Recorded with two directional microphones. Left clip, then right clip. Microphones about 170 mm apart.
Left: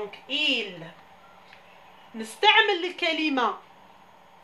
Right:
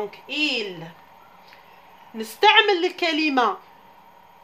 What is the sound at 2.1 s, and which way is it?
A woman's voice, 50° right (ahead or behind).